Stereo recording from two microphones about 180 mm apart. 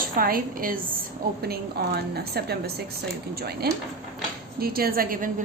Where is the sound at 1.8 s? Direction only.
65° right (ahead or behind).